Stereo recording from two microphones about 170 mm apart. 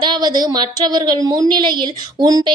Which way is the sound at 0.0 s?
25° right (ahead or behind).